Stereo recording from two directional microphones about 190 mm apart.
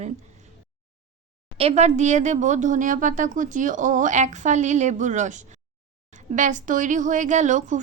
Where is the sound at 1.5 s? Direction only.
35° right (ahead or behind).